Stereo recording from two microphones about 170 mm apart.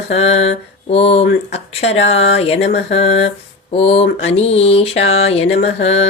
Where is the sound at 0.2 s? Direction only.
40° left (ahead or behind).